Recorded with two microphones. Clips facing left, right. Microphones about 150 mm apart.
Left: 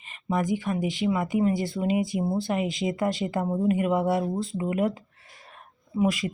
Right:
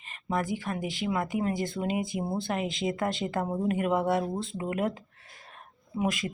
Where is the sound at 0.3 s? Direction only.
10° left (ahead or behind).